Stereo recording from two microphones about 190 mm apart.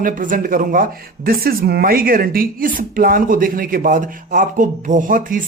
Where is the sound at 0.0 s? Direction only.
45° right (ahead or behind).